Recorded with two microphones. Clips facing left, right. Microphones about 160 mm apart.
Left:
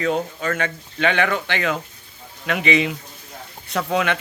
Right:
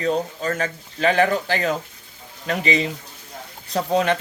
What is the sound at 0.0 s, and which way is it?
Speech, 35° right (ahead or behind).